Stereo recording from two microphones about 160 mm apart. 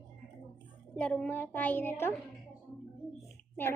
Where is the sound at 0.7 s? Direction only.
10° left (ahead or behind).